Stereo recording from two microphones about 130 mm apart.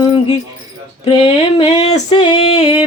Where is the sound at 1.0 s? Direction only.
45° left (ahead or behind).